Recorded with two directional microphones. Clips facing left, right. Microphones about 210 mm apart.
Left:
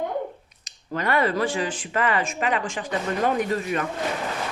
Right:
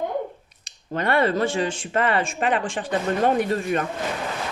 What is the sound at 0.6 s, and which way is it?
Speech, 30° right (ahead or behind).